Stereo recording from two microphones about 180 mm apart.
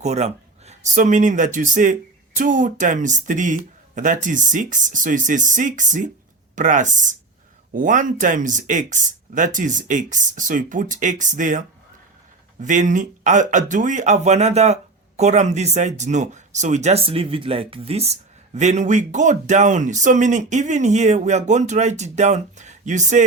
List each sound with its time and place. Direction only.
0.0 s a man's voice: 40° right (ahead or behind)
12.6 s speech: 45° right (ahead or behind)